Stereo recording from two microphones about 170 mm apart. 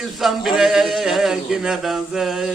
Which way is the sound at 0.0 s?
Centre (ahead or behind).